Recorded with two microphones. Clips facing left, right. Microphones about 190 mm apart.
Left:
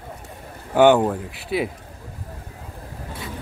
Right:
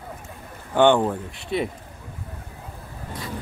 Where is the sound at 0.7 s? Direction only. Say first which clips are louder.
Left 3 dB; 5° left (ahead or behind).